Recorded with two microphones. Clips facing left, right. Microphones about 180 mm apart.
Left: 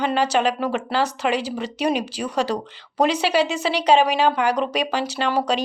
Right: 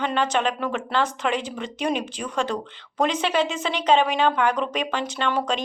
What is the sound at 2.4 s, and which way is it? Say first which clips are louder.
Speech: left 3 dB; 35° left (ahead or behind).